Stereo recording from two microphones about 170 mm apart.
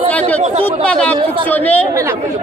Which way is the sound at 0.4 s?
35° right (ahead or behind).